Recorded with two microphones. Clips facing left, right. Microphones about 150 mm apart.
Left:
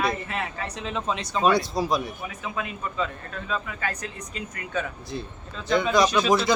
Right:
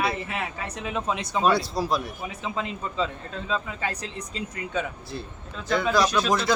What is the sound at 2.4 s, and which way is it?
Speech, 25° right (ahead or behind).